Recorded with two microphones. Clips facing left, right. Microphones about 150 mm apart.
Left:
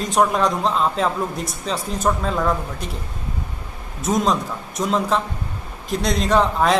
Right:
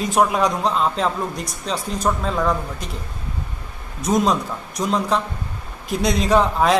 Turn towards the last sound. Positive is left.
turn(degrees=0)  # may be behind; listen again after turning